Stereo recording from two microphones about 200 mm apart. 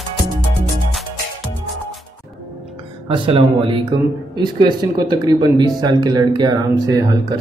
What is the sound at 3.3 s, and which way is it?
Speech, 25° right (ahead or behind).